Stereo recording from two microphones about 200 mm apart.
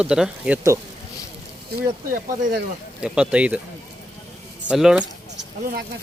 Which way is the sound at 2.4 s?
50° right (ahead or behind).